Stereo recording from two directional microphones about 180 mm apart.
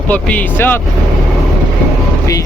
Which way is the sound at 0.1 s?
10° left (ahead or behind).